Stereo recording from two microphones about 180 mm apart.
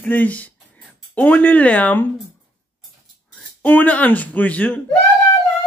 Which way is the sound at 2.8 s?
5° left (ahead or behind).